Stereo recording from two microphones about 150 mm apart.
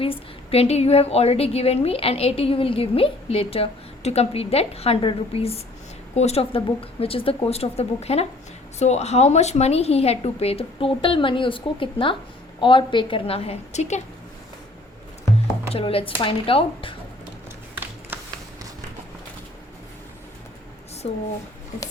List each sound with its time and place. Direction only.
0.0 s a woman's voice: 40° left (ahead or behind)
15.7 s a woman's voice: 40° left (ahead or behind)
18.1 s a sound: 15° right (ahead or behind)